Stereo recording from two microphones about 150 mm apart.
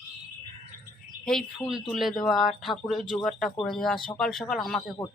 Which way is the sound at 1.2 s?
Centre (ahead or behind).